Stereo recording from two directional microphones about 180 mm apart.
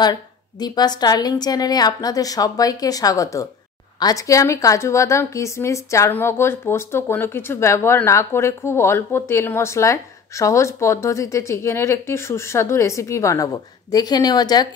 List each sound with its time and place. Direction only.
0.0 s a woman's voice: 25° left (ahead or behind)